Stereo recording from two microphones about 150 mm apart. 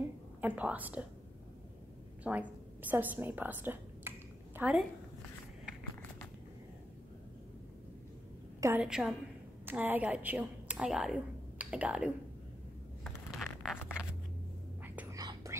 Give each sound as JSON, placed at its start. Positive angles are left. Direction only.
{"t": 0.4, "sound": "a woman's voice", "side_deg": -10}
{"t": 2.2, "sound": "a woman's voice", "side_deg": -10}
{"t": 8.5, "sound": "a woman's voice", "side_deg": -20}
{"t": 8.8, "sound": "a woman's voice", "side_deg": -5}
{"t": 13.0, "sound": "a sound", "side_deg": 0}
{"t": 14.8, "sound": "whispering", "side_deg": -10}
{"t": 15.1, "sound": "whispering", "side_deg": -25}